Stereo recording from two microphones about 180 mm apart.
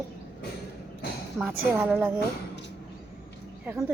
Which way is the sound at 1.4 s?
10° right (ahead or behind).